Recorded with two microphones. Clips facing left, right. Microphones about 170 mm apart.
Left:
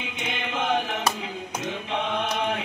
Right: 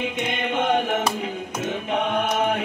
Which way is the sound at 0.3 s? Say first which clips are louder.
Right 3 dB; 50° right (ahead or behind).